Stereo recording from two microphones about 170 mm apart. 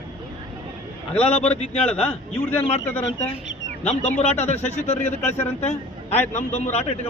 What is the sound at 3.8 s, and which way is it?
A man's voice, 40° left (ahead or behind).